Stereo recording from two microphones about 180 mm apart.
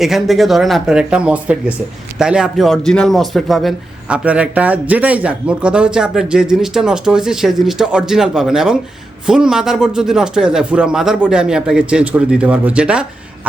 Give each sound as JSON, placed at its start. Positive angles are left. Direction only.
{"t": 0.0, "sound": "a man's voice", "side_deg": 0}